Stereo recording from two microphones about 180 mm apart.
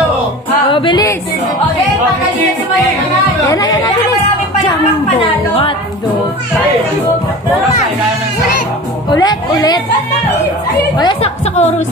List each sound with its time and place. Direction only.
0.7 s music: 25° left (ahead or behind)
3.4 s speech: 20° left (ahead or behind)
9.1 s speech: 20° left (ahead or behind)
11.0 s a woman's voice: 30° left (ahead or behind)